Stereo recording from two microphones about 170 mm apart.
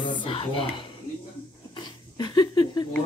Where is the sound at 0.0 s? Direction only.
30° left (ahead or behind).